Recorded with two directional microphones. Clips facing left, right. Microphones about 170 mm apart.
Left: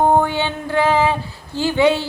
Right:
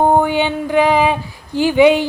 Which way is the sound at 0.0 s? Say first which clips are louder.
Right 2 dB; 15° right (ahead or behind).